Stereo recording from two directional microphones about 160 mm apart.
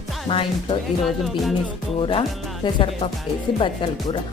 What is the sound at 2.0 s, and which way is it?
Speech, 35° left (ahead or behind).